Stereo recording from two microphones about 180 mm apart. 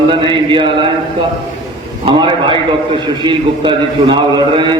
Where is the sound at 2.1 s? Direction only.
25° right (ahead or behind).